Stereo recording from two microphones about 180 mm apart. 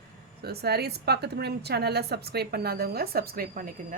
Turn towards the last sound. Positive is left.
turn(degrees=-50)  # may be behind; listen again after turning